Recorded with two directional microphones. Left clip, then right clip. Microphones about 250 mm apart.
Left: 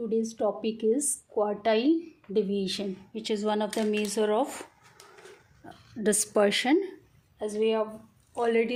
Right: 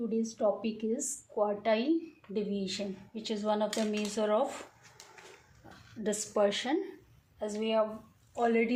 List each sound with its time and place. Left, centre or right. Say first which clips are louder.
0.1 s a woman's voice: left 2 dB; left
6.0 s a woman's voice: left 5 dB; left